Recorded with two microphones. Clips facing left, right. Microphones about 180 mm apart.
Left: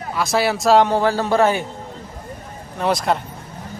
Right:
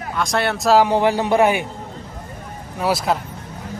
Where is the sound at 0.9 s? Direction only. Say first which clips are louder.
Right 1 dB; 15° right (ahead or behind).